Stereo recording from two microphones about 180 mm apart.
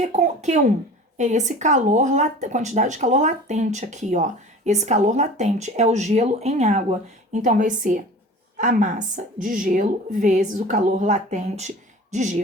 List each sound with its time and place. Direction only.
0.0 s a woman's voice: 40° right (ahead or behind)